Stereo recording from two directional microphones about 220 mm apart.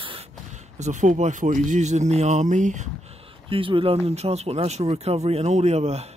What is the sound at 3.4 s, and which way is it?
Speech, 25° right (ahead or behind).